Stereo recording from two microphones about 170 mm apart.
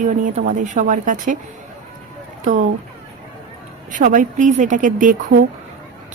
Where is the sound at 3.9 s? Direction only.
50° right (ahead or behind).